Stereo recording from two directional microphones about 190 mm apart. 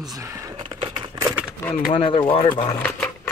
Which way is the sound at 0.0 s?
15° right (ahead or behind).